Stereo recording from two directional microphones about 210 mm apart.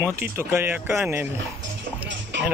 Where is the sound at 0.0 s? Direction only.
10° right (ahead or behind).